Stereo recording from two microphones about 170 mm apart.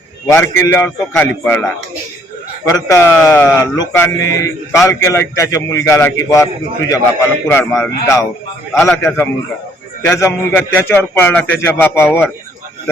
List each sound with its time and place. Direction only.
0.3 s a man's voice: 15° left (ahead or behind)
2.6 s a man's voice: 20° left (ahead or behind)